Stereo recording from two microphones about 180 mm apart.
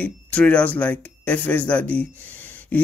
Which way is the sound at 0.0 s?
5° left (ahead or behind).